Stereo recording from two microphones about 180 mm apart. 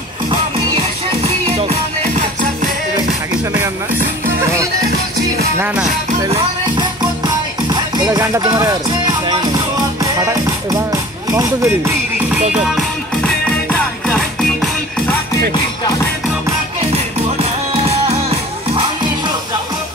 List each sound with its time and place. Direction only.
7.7 s music: 20° right (ahead or behind)
12.5 s music: centre (ahead or behind)
15.5 s music: 20° left (ahead or behind)
16.9 s music: 35° right (ahead or behind)